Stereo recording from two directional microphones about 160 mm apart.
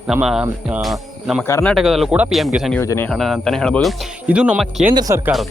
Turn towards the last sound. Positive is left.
turn(degrees=-20)  # may be behind; listen again after turning